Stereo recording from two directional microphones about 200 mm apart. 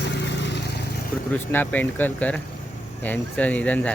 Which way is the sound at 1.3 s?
10° left (ahead or behind).